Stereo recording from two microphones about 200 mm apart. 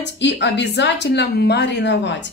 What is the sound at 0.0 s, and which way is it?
Speech, 60° left (ahead or behind).